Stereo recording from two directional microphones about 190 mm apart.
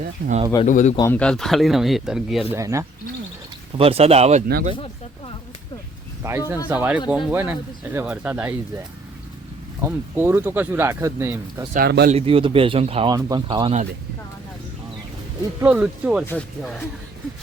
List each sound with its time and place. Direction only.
0.2 s speech: 50° right (ahead or behind)
0.6 s a man's voice: 40° left (ahead or behind)
0.9 s speech: 10° left (ahead or behind); by 2.6 s 5° right (ahead or behind)
2.6 s speech: 15° right (ahead or behind)
3.8 s speech: 30° right (ahead or behind)
6.2 s speech: 15° right (ahead or behind)
9.8 s speech: 10° right (ahead or behind)
11.7 s speech: 55° right (ahead or behind)
12.1 s speech: 30° right (ahead or behind)
13.1 s speech: 20° right (ahead or behind)
15.6 s speech: 5° right (ahead or behind)
16.2 s speech: 10° left (ahead or behind)